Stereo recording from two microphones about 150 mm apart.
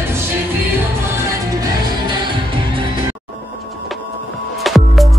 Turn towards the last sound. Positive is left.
turn(degrees=0)  # may be behind; listen again after turning